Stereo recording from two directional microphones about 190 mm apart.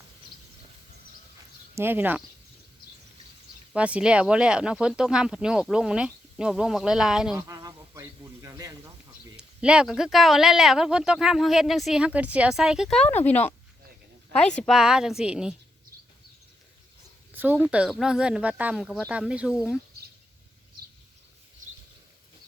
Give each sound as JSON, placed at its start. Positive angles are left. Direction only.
{"t": 1.7, "sound": "speech", "side_deg": -10}
{"t": 3.7, "sound": "speech", "side_deg": -5}
{"t": 7.4, "sound": "insect", "side_deg": -20}
{"t": 9.4, "sound": "speech", "side_deg": -5}
{"t": 14.7, "sound": "speech", "side_deg": -5}
{"t": 17.3, "sound": "speech", "side_deg": -10}